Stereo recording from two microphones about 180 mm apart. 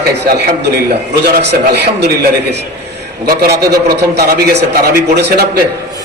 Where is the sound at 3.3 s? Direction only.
60° right (ahead or behind).